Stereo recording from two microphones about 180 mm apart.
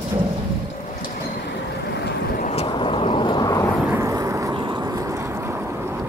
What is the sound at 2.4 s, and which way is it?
Vehicle, 40° left (ahead or behind).